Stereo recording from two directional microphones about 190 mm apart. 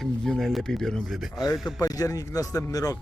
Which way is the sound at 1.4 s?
20° left (ahead or behind).